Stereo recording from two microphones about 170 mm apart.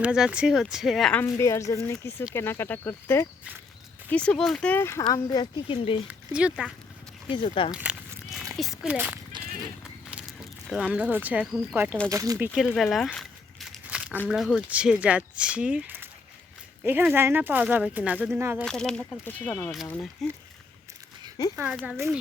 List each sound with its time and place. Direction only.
0.0 s speech: 5° right (ahead or behind)
1.2 s a woman's voice: 15° left (ahead or behind)
6.1 s speech: 5° right (ahead or behind)
7.3 s speech: 30° left (ahead or behind)
7.7 s a sound: 10° right (ahead or behind)
8.5 s a child's voice: centre (ahead or behind)
9.3 s clip-clop: 25° right (ahead or behind)
10.1 s a sound: 5° right (ahead or behind)
11.7 s speech: 10° right (ahead or behind)
12.5 s crumpling: centre (ahead or behind)
14.3 s speech: centre (ahead or behind)
18.6 s speech: 5° left (ahead or behind)
20.2 s speech: centre (ahead or behind)
21.5 s speech: 5° right (ahead or behind)